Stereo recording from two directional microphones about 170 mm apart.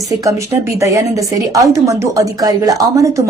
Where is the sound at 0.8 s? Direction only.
20° right (ahead or behind).